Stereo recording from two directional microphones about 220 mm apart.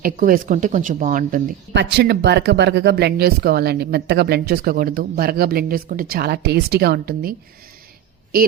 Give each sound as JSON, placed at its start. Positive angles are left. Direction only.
{"t": 0.0, "sound": "speech", "side_deg": -40}
{"t": 1.7, "sound": "speech", "side_deg": -50}